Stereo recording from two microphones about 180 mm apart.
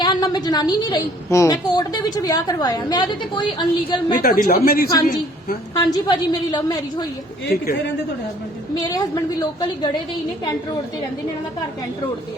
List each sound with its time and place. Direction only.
0.0 s a woman's voice: 25° left (ahead or behind)
4.2 s speech: 55° left (ahead or behind)
5.7 s a woman's voice: 20° left (ahead or behind)
7.4 s speech: 60° left (ahead or behind)
8.8 s a woman's voice: 20° left (ahead or behind)